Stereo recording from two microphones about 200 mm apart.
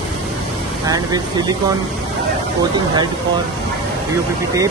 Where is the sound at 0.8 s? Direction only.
20° right (ahead or behind).